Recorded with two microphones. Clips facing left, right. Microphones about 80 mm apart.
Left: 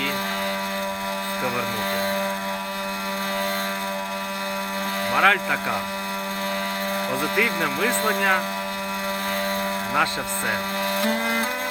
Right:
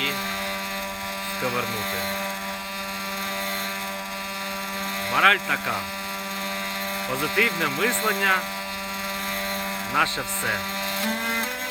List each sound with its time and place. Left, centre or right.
5.1 s speech: centre
7.1 s speech: centre
11.0 s music: left